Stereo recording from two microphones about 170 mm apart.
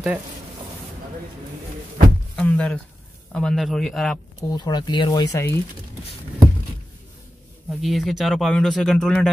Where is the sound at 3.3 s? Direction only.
5° left (ahead or behind).